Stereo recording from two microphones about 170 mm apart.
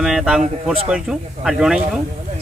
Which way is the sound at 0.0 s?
5° right (ahead or behind).